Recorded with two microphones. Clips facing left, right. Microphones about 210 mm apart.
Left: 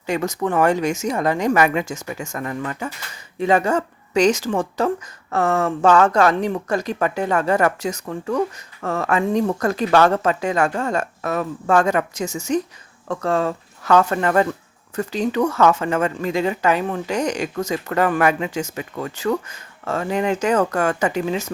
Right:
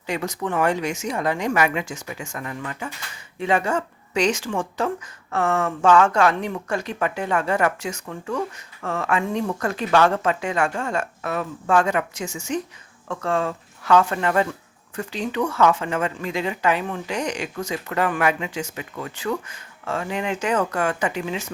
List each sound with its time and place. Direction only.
0.0 s speech: 45° left (ahead or behind)